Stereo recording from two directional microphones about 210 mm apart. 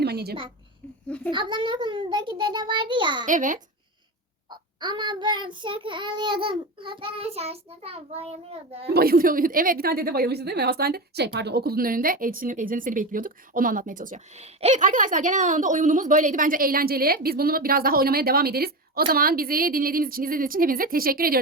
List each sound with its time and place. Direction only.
0.0 s a woman's voice: 50° right (ahead or behind)
1.3 s child singing: 20° right (ahead or behind)
3.2 s speech: 40° right (ahead or behind)
4.4 s child singing: 20° right (ahead or behind)
8.9 s a woman's voice: 45° right (ahead or behind)